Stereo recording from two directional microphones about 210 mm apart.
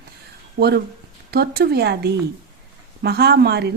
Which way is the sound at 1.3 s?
50° right (ahead or behind).